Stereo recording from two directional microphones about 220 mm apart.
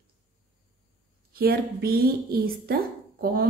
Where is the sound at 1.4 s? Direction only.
45° right (ahead or behind).